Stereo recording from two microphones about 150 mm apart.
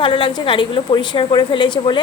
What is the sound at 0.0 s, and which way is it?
A woman's voice, 35° left (ahead or behind).